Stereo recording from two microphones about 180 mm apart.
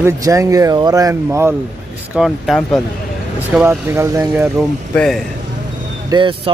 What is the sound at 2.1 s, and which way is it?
Speech, centre (ahead or behind).